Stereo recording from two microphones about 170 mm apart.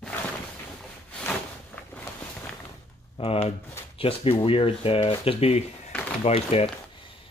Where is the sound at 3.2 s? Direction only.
35° left (ahead or behind).